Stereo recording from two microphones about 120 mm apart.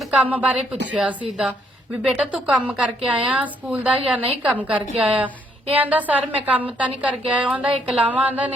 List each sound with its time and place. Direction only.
0.2 s a woman's voice: 10° right (ahead or behind)